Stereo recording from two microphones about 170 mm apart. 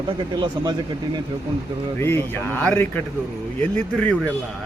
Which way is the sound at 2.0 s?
15° left (ahead or behind).